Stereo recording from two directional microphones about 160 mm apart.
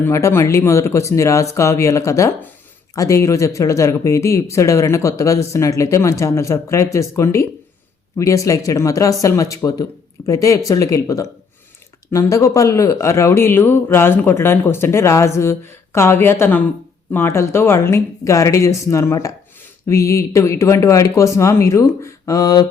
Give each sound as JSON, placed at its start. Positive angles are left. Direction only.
{"t": 0.0, "sound": "a man's voice", "side_deg": 15}